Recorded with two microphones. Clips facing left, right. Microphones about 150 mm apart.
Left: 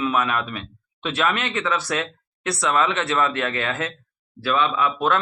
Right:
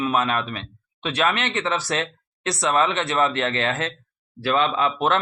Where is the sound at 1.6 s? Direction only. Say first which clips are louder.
Even; 35° right (ahead or behind).